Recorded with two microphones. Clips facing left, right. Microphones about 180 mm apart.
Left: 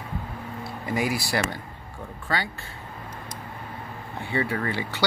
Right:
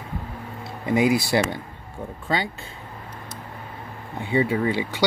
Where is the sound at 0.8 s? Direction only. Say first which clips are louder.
Right 7 dB; 20° right (ahead or behind).